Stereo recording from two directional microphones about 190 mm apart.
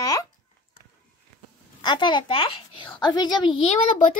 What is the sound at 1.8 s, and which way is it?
A child's voice, 25° left (ahead or behind).